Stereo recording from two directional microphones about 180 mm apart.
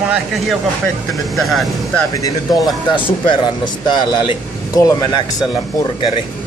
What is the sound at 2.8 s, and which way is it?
Speech, 25° left (ahead or behind).